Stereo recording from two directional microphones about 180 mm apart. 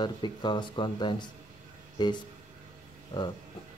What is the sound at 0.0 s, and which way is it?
Speech, 25° left (ahead or behind).